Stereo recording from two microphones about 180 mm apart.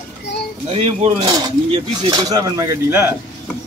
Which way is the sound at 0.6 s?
35° right (ahead or behind).